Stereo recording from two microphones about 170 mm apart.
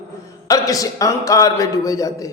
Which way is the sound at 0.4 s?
20° left (ahead or behind).